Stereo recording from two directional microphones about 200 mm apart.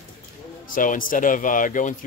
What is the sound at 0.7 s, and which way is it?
Speech, 40° left (ahead or behind).